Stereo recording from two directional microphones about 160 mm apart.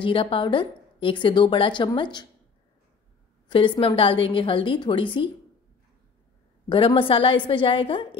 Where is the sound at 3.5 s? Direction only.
30° left (ahead or behind).